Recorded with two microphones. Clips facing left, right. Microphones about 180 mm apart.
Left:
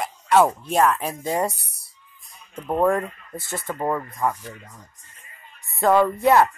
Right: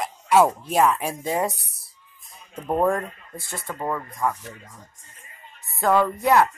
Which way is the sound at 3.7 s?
25° left (ahead or behind).